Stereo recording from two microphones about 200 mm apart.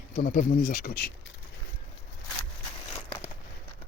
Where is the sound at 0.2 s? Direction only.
45° left (ahead or behind).